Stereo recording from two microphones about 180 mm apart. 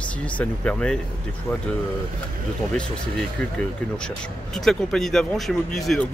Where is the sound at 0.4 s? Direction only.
5° left (ahead or behind).